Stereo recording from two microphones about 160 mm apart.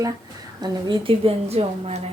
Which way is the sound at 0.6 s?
30° right (ahead or behind).